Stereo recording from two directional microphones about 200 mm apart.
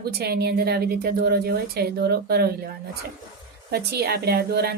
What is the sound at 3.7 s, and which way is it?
A woman's voice, 50° right (ahead or behind).